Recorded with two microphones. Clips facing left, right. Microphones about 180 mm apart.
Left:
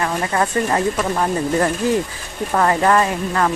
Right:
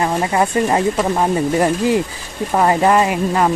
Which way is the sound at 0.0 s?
20° right (ahead or behind).